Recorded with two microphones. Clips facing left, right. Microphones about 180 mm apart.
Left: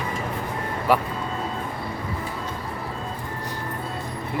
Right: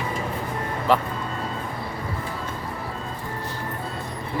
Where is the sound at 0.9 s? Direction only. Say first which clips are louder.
Even; 10° left (ahead or behind).